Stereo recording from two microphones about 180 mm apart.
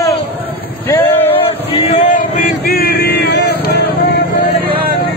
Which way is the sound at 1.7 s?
35° left (ahead or behind).